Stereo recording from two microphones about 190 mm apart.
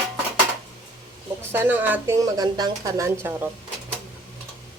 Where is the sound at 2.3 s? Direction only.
20° right (ahead or behind).